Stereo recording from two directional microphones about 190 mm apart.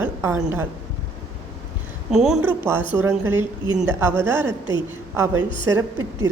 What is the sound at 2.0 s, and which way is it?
A woman's voice, centre (ahead or behind).